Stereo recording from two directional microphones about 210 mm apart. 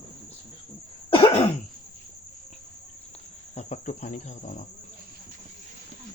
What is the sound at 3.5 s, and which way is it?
Cricket, 35° left (ahead or behind).